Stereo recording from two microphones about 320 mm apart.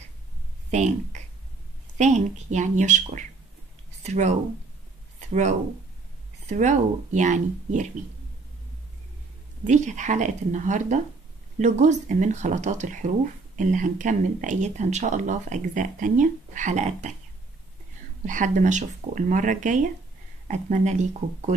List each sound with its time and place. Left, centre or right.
0.7 s speech: right
9.7 s speech: right
18.2 s speech: right